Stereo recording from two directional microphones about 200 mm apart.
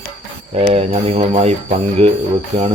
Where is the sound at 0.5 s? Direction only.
30° right (ahead or behind).